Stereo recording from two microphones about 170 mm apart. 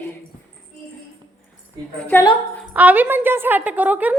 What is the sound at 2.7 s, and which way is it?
A woman's voice, 10° right (ahead or behind).